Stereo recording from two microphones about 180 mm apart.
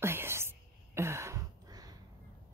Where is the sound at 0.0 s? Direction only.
15° right (ahead or behind).